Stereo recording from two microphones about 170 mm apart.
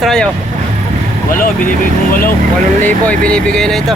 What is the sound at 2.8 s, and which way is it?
Speech, 10° left (ahead or behind).